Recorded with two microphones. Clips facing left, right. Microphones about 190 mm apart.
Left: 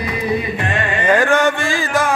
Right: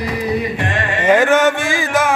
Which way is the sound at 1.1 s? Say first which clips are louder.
Right 2 dB; 20° right (ahead or behind).